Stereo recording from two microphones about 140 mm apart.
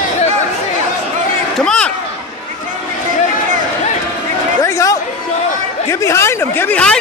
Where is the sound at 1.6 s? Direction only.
5° left (ahead or behind).